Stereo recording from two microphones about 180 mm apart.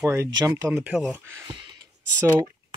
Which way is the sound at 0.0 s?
15° right (ahead or behind).